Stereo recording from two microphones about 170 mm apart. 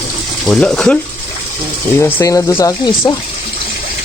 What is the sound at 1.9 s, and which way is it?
Speech, 15° left (ahead or behind).